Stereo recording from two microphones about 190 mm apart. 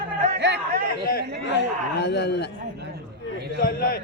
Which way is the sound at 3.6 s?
50° left (ahead or behind).